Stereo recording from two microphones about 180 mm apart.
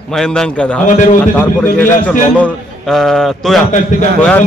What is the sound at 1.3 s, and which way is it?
A man's voice, 10° left (ahead or behind).